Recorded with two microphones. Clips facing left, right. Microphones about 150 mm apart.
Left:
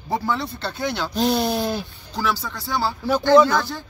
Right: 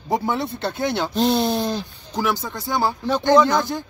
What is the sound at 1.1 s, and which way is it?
Speech, centre (ahead or behind).